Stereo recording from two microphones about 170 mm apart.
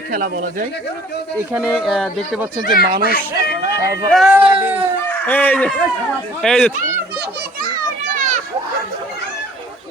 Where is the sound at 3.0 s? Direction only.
60° left (ahead or behind).